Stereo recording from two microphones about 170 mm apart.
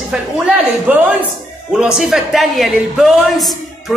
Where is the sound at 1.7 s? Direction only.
5° right (ahead or behind).